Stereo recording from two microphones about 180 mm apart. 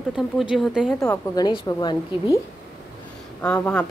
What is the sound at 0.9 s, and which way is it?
A woman's voice, 20° left (ahead or behind).